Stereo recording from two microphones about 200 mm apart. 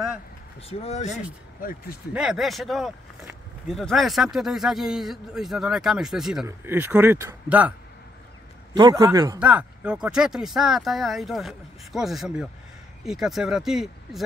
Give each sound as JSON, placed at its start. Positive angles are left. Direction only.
{"t": 0.6, "sound": "speech", "side_deg": 30}
{"t": 1.6, "sound": "speech", "side_deg": 45}
{"t": 2.1, "sound": "a man's voice", "side_deg": 0}
{"t": 8.7, "sound": "a man's voice", "side_deg": -20}
{"t": 9.4, "sound": "speech", "side_deg": -5}